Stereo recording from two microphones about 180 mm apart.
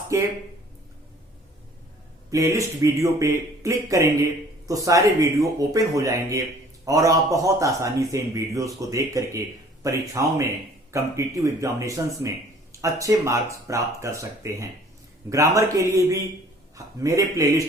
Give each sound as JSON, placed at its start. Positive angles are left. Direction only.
{"t": 0.1, "sound": "speech", "side_deg": -15}
{"t": 2.3, "sound": "a man's voice", "side_deg": -15}